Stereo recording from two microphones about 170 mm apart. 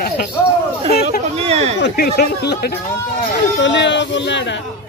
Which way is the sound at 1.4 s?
35° right (ahead or behind).